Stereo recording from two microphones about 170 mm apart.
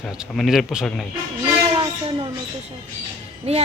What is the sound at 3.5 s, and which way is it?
Speech, 35° right (ahead or behind).